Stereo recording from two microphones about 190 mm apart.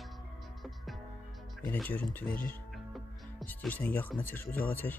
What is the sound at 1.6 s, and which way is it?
Speech, 10° left (ahead or behind).